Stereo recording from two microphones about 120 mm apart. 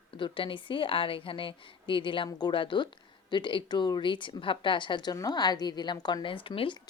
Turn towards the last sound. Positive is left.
turn(degrees=50)  # may be behind; listen again after turning